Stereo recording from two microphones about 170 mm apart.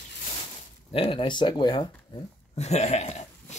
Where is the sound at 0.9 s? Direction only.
30° left (ahead or behind).